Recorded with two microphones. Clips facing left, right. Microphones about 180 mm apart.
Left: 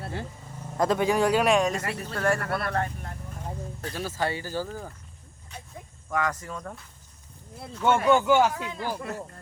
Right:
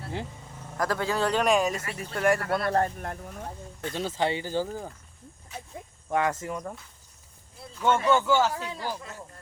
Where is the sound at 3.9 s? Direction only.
20° right (ahead or behind).